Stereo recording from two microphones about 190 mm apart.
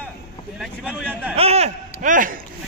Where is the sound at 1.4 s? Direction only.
35° right (ahead or behind).